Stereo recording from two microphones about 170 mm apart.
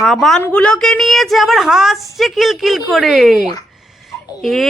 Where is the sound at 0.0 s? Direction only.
Centre (ahead or behind).